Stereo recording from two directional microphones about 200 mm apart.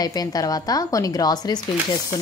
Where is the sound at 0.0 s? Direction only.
20° left (ahead or behind).